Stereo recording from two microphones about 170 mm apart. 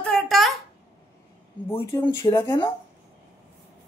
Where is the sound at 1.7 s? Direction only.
15° left (ahead or behind).